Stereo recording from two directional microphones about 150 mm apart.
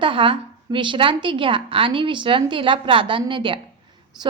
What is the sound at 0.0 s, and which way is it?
A woman's voice, 35° right (ahead or behind).